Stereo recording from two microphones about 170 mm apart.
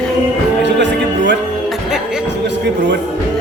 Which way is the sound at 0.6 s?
90° right.